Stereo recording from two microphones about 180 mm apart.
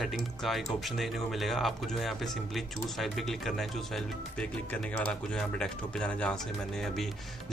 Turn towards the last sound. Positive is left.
turn(degrees=5)  # may be behind; listen again after turning